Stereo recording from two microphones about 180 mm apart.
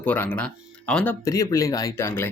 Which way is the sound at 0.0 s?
10° left (ahead or behind).